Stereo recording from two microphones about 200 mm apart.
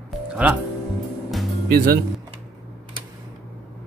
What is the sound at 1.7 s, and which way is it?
Speech, 45° right (ahead or behind).